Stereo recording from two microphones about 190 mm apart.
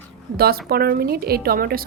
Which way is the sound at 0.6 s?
55° right (ahead or behind).